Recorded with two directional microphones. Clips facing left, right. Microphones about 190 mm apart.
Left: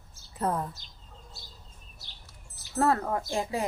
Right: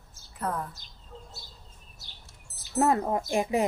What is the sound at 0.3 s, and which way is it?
Speech, 25° left (ahead or behind).